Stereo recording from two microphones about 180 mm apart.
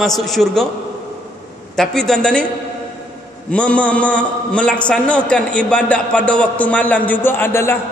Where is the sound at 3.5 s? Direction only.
5° left (ahead or behind).